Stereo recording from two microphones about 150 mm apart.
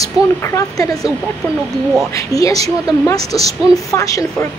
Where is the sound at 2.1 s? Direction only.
20° left (ahead or behind).